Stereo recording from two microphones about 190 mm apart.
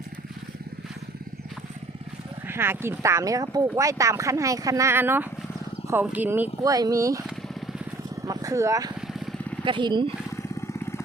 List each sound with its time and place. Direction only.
2.5 s speech: 10° right (ahead or behind)
8.2 s a sound: 15° right (ahead or behind)
9.6 s speech: 25° right (ahead or behind)
10.3 s vehicle: 15° left (ahead or behind)